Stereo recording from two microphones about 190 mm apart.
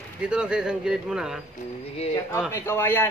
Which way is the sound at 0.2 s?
5° right (ahead or behind).